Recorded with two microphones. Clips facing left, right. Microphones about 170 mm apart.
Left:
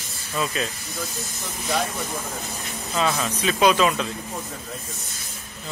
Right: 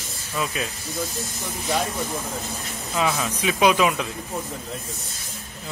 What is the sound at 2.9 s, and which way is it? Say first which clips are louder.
Speech: even; 10° right (ahead or behind).